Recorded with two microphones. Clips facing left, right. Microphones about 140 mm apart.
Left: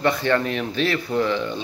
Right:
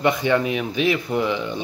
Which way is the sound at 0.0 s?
15° right (ahead or behind).